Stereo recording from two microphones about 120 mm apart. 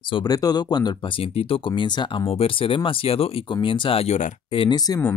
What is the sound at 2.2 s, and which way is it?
Speech, 55° left (ahead or behind).